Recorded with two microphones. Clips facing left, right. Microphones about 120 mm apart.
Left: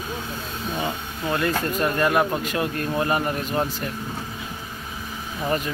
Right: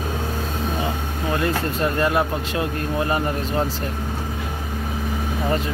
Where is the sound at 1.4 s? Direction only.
25° right (ahead or behind).